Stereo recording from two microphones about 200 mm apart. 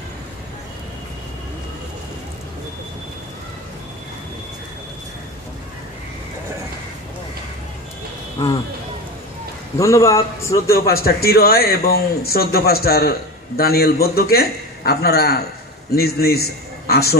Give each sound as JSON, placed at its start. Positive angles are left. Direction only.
{"t": 9.8, "sound": "a man's voice", "side_deg": 15}
{"t": 11.0, "sound": "a man's voice", "side_deg": 50}